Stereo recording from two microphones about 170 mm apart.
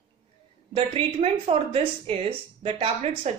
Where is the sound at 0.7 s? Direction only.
35° right (ahead or behind).